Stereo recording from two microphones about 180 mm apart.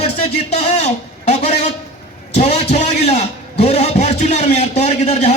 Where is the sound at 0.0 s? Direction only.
40° left (ahead or behind).